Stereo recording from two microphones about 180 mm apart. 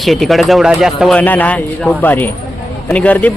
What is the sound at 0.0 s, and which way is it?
Speech, centre (ahead or behind).